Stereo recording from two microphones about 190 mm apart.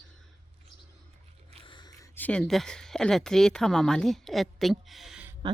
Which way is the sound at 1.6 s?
25° left (ahead or behind).